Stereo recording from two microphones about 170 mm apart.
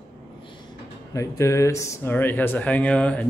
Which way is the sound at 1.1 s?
15° left (ahead or behind).